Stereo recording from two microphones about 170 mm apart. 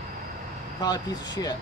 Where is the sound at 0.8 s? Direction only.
25° left (ahead or behind).